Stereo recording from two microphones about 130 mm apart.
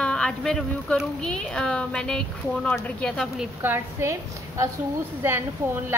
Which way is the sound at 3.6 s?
20° right (ahead or behind).